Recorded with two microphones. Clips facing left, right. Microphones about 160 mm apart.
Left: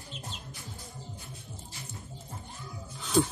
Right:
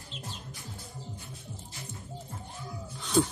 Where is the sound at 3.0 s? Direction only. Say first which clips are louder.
Even; centre (ahead or behind).